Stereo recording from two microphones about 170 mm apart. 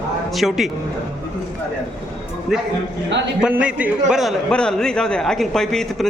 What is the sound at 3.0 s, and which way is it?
Speech, 90° right.